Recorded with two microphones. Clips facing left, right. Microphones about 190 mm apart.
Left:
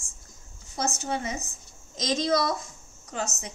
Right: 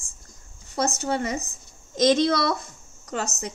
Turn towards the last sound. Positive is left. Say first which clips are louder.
# right 3 dB
turn(degrees=-70)  # may be behind; listen again after turning